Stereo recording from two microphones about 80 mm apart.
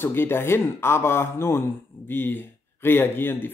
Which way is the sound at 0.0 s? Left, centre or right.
Left.